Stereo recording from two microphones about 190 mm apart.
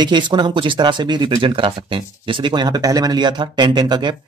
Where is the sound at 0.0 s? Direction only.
25° right (ahead or behind).